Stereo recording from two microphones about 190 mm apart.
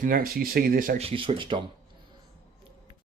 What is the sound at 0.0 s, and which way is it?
Speech, 50° right (ahead or behind).